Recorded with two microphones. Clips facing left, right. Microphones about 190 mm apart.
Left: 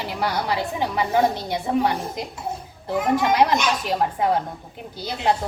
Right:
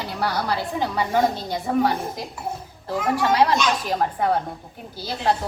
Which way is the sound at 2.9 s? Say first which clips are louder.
Left 1 dB; 20° left (ahead or behind).